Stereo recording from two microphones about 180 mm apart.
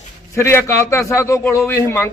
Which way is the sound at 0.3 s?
15° left (ahead or behind).